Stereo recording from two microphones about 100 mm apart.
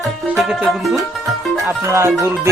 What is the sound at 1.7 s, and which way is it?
Music, 25° right (ahead or behind).